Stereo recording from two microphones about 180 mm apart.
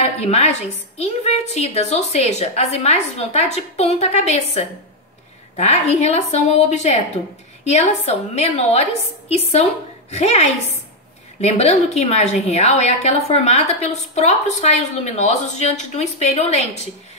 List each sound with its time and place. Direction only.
0.2 s a woman's voice: 35° left (ahead or behind)